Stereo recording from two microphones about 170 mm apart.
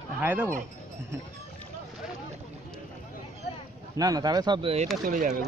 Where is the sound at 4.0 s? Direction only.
20° right (ahead or behind).